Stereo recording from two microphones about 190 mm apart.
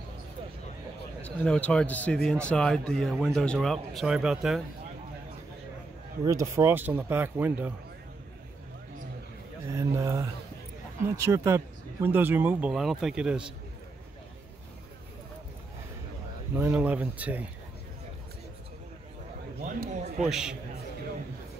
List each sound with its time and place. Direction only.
1.2 s a man's voice: 5° left (ahead or behind)
6.2 s speech: 15° right (ahead or behind)
9.8 s speech: 15° right (ahead or behind)
16.5 s speech: 10° right (ahead or behind)
19.6 s a sound: 40° right (ahead or behind)
20.2 s speech: centre (ahead or behind)